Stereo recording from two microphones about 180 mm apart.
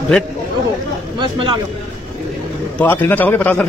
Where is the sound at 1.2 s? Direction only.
25° right (ahead or behind).